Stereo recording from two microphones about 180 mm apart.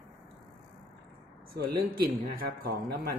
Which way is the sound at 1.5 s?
60° right (ahead or behind).